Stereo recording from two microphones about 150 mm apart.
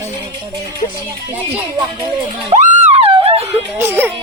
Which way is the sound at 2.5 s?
50° right (ahead or behind).